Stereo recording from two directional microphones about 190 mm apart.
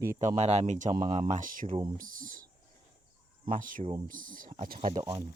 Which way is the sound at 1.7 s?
25° right (ahead or behind).